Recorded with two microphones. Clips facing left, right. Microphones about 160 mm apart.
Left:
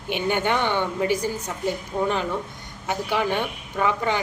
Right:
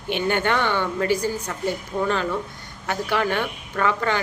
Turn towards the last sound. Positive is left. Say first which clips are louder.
# right 1 dB
turn(degrees=15)  # may be behind; listen again after turning